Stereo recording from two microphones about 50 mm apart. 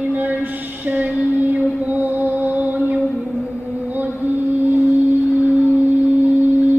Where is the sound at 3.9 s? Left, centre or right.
Right.